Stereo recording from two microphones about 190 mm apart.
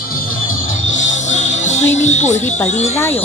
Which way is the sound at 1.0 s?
40° left (ahead or behind).